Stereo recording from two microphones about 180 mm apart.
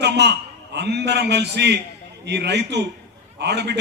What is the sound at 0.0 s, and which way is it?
A man's voice, 70° right (ahead or behind).